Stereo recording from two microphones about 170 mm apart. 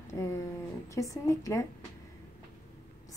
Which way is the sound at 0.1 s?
15° left (ahead or behind).